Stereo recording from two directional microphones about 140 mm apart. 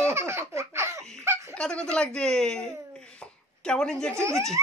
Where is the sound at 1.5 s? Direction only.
5° left (ahead or behind).